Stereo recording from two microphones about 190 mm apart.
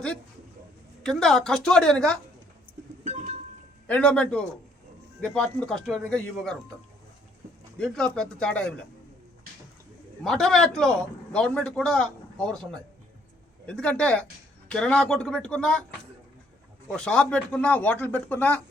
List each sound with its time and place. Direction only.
1.0 s a man's voice: 5° left (ahead or behind)
3.0 s goat: 35° right (ahead or behind)
3.8 s a man's voice: 5° left (ahead or behind)
7.8 s a man's voice: 5° left (ahead or behind)
10.2 s a man's voice: centre (ahead or behind)
13.7 s a man's voice: 5° left (ahead or behind)
16.9 s speech: 5° left (ahead or behind)